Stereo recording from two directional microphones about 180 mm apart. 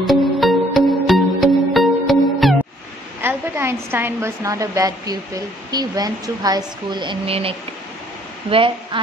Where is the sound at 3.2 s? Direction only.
15° right (ahead or behind).